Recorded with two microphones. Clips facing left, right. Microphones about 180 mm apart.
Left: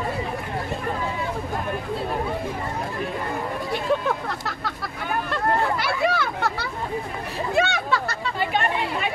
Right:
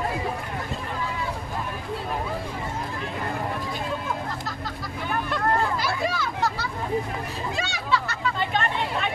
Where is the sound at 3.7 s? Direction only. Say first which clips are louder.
Left 6 dB; 70° left (ahead or behind).